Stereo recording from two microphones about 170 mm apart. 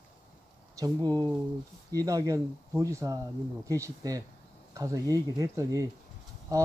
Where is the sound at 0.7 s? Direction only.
25° right (ahead or behind).